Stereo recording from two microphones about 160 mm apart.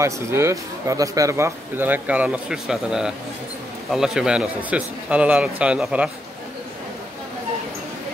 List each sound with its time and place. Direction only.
0.0 s speech: 15° right (ahead or behind)